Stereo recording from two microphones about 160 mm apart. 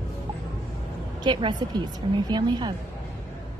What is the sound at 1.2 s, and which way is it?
A woman's voice, 30° right (ahead or behind).